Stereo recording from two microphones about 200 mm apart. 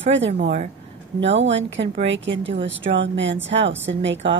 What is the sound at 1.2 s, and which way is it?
A woman's voice, 65° right (ahead or behind).